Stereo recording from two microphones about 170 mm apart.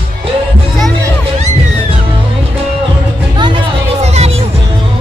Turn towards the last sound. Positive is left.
turn(degrees=-40)  # may be behind; listen again after turning